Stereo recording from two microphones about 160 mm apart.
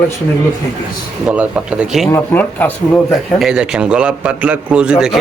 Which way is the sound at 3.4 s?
5° right (ahead or behind).